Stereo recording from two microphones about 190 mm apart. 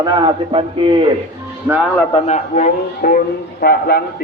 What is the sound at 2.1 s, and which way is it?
A man's voice, 35° left (ahead or behind).